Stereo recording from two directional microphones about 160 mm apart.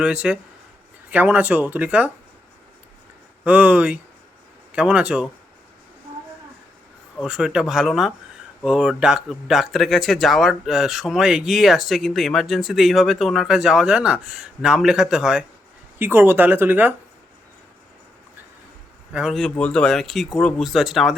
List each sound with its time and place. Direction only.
0.0 s speech: 5° right (ahead or behind)
3.4 s speech: 10° right (ahead or behind)
7.2 s speech: 5° right (ahead or behind)
16.0 s speech: 15° right (ahead or behind)
19.1 s speech: centre (ahead or behind)